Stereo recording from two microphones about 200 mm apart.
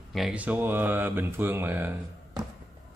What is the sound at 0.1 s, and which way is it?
Speech, 5° right (ahead or behind).